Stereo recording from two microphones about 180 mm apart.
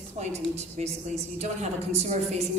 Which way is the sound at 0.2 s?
40° right (ahead or behind).